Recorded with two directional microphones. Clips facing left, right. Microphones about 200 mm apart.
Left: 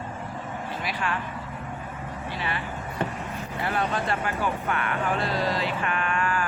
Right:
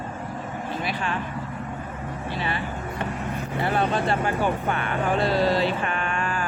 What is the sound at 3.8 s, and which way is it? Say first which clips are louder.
Speech: right 3 dB; 30° right (ahead or behind).